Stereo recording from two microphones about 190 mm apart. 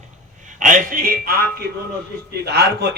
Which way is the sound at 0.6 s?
45° right (ahead or behind).